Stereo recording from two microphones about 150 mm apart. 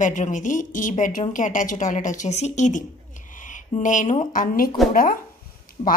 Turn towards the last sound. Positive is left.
turn(degrees=45)  # may be behind; listen again after turning